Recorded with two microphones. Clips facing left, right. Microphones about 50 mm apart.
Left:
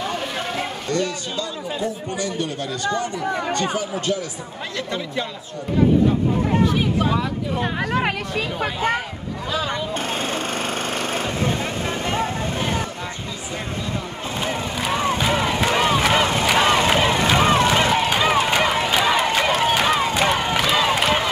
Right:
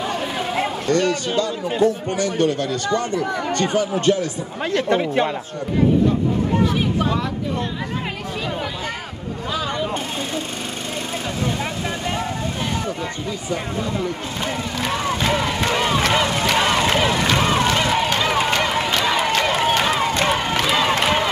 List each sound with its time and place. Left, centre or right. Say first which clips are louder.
0.8 s speech: right 5 dB; right
4.0 s speech: right 6 dB; right
4.7 s speech: right 8 dB; right
7.0 s speech: even; centre
14.4 s crowd: even; centre
16.5 s run: left 1 dB; centre